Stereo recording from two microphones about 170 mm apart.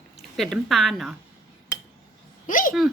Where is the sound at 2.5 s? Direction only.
50° left (ahead or behind).